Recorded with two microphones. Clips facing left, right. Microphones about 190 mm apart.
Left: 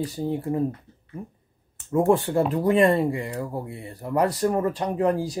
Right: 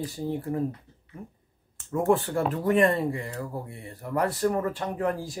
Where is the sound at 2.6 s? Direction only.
25° left (ahead or behind).